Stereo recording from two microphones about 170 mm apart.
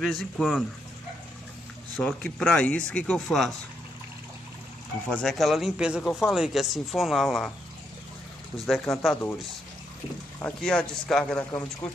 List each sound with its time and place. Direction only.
0.0 s speech: centre (ahead or behind)
2.0 s speech: 5° left (ahead or behind)
5.1 s speech: centre (ahead or behind)
8.5 s speech: centre (ahead or behind)
10.4 s speech: 5° left (ahead or behind)